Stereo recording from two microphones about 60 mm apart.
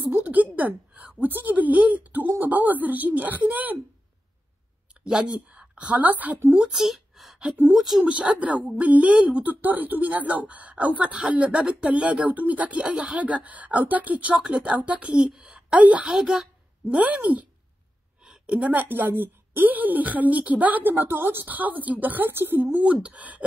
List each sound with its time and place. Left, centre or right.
0.1 s a woman's voice: right
5.0 s speech: centre
6.7 s a sound: centre
8.0 s speech: right
16.1 s a woman's voice: centre
16.8 s speech: right
18.2 s a sound: centre
18.6 s speech: right